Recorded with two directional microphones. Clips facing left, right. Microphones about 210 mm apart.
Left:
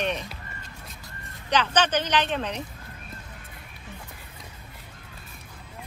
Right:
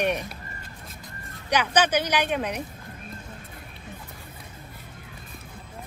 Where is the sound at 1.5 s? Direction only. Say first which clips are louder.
Right 1 dB; 10° right (ahead or behind).